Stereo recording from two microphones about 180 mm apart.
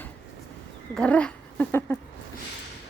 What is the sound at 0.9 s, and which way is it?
Dog, 5° left (ahead or behind).